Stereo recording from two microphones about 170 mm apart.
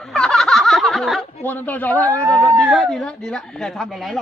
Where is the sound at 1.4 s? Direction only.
10° left (ahead or behind).